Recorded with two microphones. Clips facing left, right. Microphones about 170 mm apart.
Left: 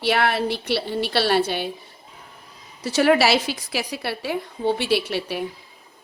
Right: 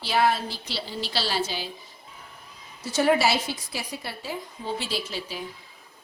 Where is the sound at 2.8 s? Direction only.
80° left.